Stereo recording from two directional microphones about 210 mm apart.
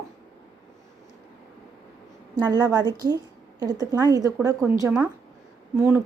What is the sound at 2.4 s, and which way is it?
A woman's voice, 20° right (ahead or behind).